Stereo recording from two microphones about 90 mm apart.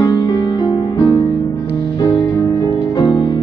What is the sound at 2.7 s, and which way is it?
Music, 60° left (ahead or behind).